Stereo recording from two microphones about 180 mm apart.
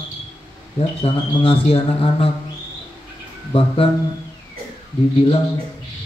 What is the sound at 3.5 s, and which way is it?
Speech, 30° left (ahead or behind).